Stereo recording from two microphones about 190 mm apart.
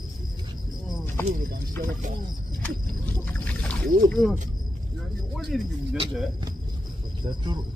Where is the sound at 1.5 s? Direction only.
45° right (ahead or behind).